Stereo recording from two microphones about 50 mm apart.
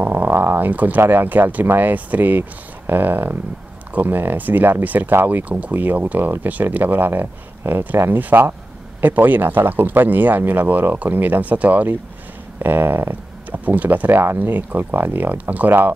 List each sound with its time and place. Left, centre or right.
0.0 s a sound: right
1.0 s speech: right
5.4 s speech: right
12.5 s speech: right
14.2 s speech: right
14.5 s speech: right